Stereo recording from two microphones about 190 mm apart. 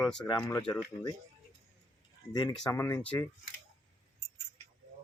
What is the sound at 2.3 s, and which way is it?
Speech, 20° left (ahead or behind).